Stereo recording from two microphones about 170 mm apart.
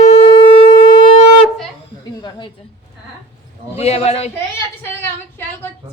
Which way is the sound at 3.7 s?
35° left (ahead or behind).